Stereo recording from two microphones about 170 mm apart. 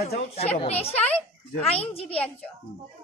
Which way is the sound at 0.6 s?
35° left (ahead or behind).